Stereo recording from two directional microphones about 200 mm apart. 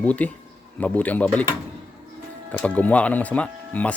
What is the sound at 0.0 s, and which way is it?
Speech, 5° left (ahead or behind).